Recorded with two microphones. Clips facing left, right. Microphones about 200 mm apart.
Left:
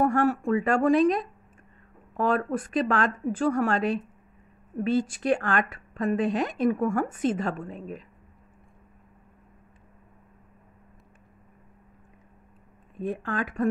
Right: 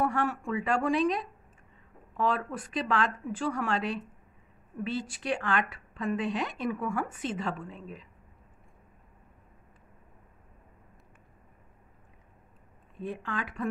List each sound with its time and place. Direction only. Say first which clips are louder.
0.0 s a woman's voice: left 6 dB; 45° left (ahead or behind)
13.0 s a woman's voice: left 6 dB; 45° left (ahead or behind)